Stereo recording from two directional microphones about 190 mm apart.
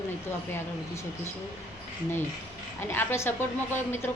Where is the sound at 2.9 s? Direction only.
10° left (ahead or behind).